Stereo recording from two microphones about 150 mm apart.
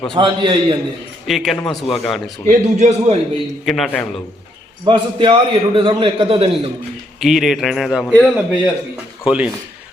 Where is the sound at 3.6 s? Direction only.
Centre (ahead or behind).